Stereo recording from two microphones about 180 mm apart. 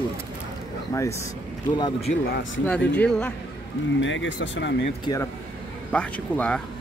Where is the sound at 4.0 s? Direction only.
90° left.